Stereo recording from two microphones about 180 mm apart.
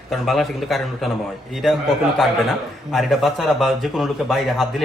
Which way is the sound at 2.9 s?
Centre (ahead or behind).